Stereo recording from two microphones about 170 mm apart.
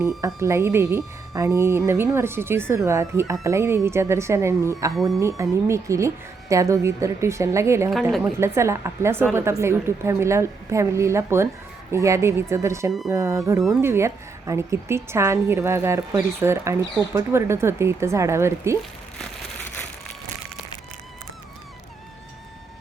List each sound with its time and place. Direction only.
0.3 s a woman's voice: 15° right (ahead or behind)
4.9 s speech: centre (ahead or behind)
5.4 s a woman's voice: 15° right (ahead or behind)